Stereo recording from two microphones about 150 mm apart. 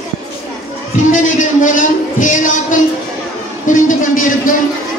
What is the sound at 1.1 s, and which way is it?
Speech, 55° left (ahead or behind).